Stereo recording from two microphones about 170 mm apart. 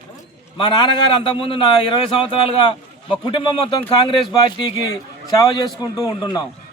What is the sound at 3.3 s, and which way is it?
A man's voice, 30° left (ahead or behind).